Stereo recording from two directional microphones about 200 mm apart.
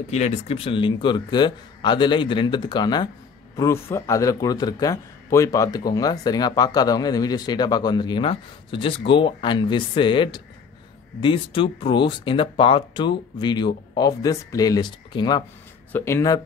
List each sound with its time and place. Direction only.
0.1 s a man's voice: 30° left (ahead or behind); by 16.3 s 15° left (ahead or behind)